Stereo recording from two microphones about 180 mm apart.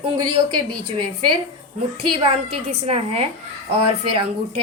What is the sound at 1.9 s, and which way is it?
A woman's voice, 30° right (ahead or behind).